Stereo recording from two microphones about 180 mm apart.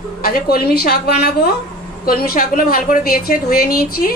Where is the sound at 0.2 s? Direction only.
55° left (ahead or behind).